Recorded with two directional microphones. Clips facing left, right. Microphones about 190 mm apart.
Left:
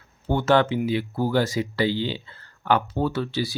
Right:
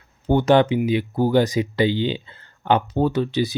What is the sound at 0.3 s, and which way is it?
Speech, 15° right (ahead or behind).